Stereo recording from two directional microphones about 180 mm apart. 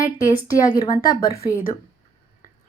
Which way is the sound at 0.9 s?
50° left (ahead or behind).